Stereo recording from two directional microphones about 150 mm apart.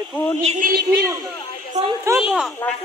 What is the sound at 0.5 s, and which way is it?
Speech, 70° right (ahead or behind).